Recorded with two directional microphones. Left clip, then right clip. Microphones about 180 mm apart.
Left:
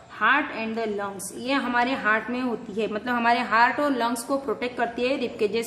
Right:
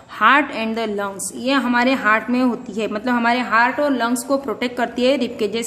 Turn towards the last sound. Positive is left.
turn(degrees=-25)  # may be behind; listen again after turning